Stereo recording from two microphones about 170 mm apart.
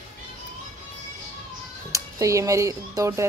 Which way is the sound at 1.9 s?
20° right (ahead or behind).